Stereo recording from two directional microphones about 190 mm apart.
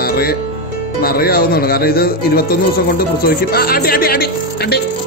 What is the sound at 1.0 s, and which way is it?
Speech, 50° left (ahead or behind).